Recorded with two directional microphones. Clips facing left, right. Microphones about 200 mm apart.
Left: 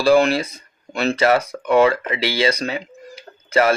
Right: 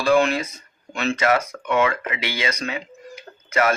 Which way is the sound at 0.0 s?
35° left (ahead or behind).